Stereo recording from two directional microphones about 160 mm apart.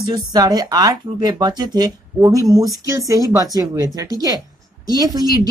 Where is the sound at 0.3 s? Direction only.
25° right (ahead or behind).